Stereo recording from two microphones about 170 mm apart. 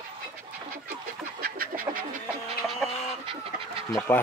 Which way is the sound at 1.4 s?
60° right (ahead or behind).